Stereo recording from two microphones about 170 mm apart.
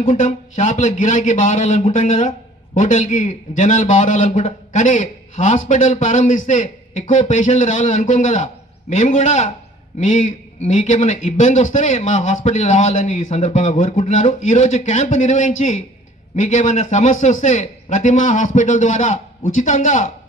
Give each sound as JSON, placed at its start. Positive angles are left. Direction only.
{"t": 0.0, "sound": "speech", "side_deg": 45}